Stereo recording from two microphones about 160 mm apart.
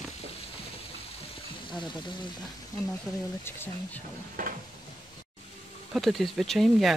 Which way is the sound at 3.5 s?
15° left (ahead or behind).